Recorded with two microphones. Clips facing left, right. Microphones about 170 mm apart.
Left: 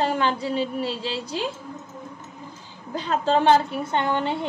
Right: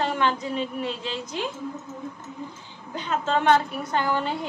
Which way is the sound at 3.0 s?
35° left (ahead or behind).